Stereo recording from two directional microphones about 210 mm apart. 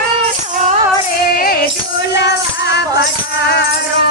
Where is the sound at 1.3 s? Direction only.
45° left (ahead or behind).